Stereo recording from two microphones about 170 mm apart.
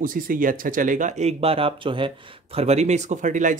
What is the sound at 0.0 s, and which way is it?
Speech, 55° right (ahead or behind).